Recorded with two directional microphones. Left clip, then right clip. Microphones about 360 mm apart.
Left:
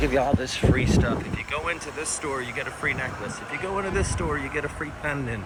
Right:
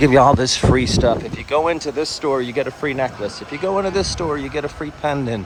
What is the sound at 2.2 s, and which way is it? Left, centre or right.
Speech, centre.